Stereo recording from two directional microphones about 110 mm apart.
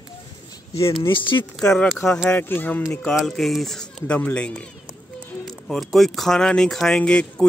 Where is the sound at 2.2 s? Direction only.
15° left (ahead or behind).